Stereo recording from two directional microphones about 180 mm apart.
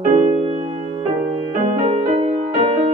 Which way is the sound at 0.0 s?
40° right (ahead or behind).